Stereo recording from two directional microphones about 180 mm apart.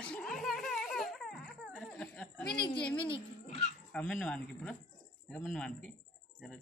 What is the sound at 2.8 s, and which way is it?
Speech, 5° left (ahead or behind).